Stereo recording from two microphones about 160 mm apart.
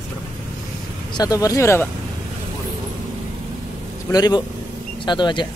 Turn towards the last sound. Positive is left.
turn(degrees=30)  # may be behind; listen again after turning